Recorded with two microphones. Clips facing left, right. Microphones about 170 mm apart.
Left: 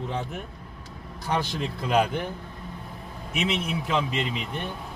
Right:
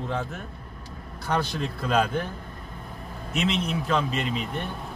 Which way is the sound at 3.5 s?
15° left (ahead or behind).